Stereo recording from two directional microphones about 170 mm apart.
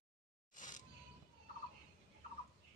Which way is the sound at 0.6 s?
50° left (ahead or behind).